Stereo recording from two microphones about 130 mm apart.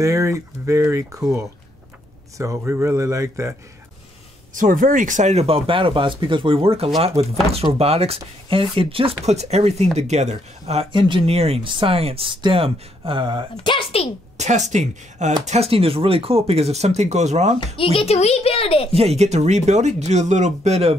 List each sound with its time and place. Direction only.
0.0 s speech: 25° right (ahead or behind)
2.3 s speech: 25° right (ahead or behind)
4.6 s speech: 90° right; by 10.9 s 55° right (ahead or behind)
10.9 s speech: 40° right (ahead or behind)
13.7 s a woman's voice: 45° left (ahead or behind)
14.3 s speech: 65° right (ahead or behind)
17.7 s a woman's voice: 45° left (ahead or behind)
18.9 s speech: 50° right (ahead or behind)